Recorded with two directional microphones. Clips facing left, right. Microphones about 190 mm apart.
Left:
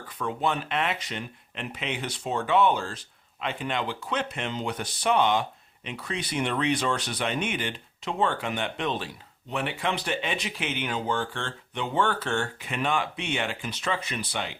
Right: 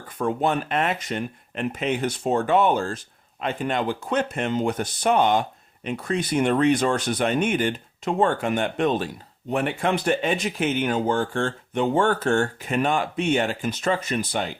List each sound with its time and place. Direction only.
0.2 s speech: 45° right (ahead or behind)